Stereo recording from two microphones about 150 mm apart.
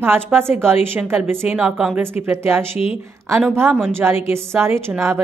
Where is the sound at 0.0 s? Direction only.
15° right (ahead or behind).